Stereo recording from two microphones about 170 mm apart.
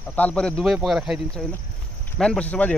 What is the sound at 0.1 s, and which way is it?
Speech, 10° left (ahead or behind).